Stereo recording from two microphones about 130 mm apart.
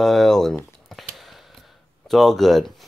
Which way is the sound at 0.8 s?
Centre (ahead or behind).